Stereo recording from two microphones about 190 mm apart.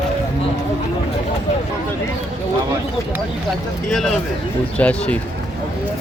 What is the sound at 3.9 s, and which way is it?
Speech, centre (ahead or behind).